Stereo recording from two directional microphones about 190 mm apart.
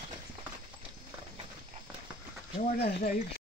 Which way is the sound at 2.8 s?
50° left (ahead or behind).